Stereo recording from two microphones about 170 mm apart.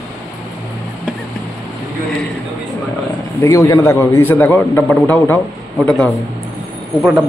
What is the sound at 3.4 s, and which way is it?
A man's voice, 20° left (ahead or behind).